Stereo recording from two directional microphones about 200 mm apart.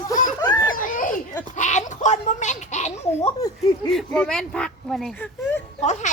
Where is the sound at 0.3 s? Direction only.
20° left (ahead or behind).